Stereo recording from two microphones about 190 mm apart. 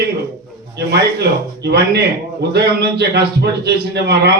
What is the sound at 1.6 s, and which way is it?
A man's voice, 60° right (ahead or behind).